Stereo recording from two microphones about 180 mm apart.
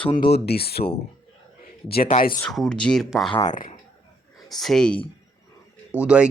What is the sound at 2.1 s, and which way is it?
Speech, 40° left (ahead or behind).